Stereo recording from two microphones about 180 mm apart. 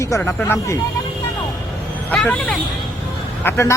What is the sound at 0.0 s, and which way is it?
Speech, 15° left (ahead or behind).